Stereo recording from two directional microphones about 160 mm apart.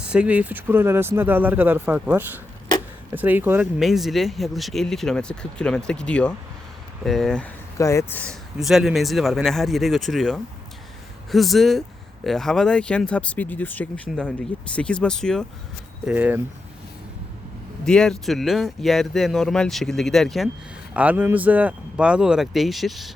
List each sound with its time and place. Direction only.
0.0 s speech: 5° right (ahead or behind)
3.8 s speech: centre (ahead or behind)
7.8 s speech: 20° left (ahead or behind)
8.2 s speech: centre (ahead or behind)
16.0 s speech: 10° right (ahead or behind)
17.8 s speech: 5° left (ahead or behind)
20.9 s speech: 10° right (ahead or behind)